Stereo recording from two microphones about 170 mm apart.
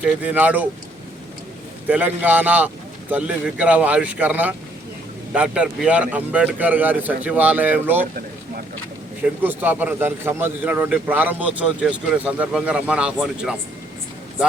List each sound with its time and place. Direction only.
0.1 s speech: 10° right (ahead or behind)
1.9 s speech: 10° right (ahead or behind)
9.2 s speech: 10° right (ahead or behind)